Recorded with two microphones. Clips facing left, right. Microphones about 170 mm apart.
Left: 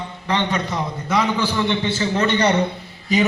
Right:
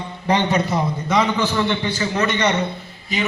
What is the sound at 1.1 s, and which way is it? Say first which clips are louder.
Speech: even; 5° left (ahead or behind).